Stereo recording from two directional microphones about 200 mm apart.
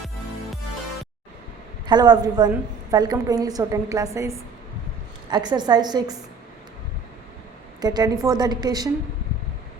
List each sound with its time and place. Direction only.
1.9 s a woman's voice: 20° right (ahead or behind)
7.8 s a woman's voice: 20° right (ahead or behind)